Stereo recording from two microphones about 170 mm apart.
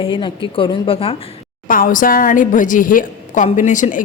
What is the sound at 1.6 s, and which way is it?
A woman's voice, 55° left (ahead or behind).